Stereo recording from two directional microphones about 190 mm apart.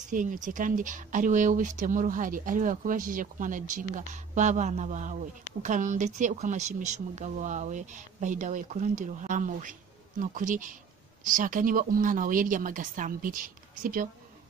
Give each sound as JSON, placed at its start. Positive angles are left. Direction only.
{"t": 0.1, "sound": "speech", "side_deg": -45}